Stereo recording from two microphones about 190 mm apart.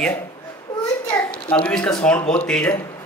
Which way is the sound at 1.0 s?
5° left (ahead or behind).